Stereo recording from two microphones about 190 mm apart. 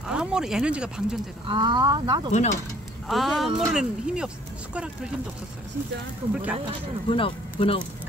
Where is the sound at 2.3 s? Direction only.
40° left (ahead or behind).